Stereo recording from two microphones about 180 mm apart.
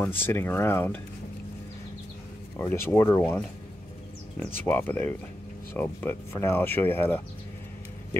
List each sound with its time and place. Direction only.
0.0 s speech: 10° left (ahead or behind)
2.6 s speech: 15° left (ahead or behind)
4.6 s speech: 10° left (ahead or behind)